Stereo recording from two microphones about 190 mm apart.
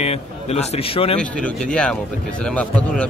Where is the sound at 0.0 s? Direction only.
35° left (ahead or behind).